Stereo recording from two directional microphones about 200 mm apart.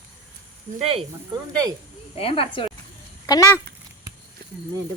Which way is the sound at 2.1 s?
30° left (ahead or behind).